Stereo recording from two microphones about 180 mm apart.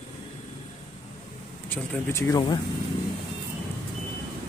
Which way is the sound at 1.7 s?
10° left (ahead or behind).